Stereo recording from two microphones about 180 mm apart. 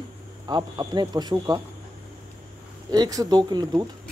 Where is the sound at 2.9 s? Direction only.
20° right (ahead or behind).